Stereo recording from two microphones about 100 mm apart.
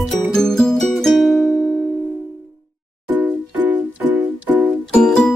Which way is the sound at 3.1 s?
15° right (ahead or behind).